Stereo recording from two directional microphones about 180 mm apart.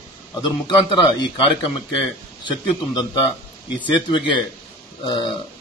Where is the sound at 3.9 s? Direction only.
25° left (ahead or behind).